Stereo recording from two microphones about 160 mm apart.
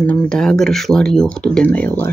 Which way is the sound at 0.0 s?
5° left (ahead or behind).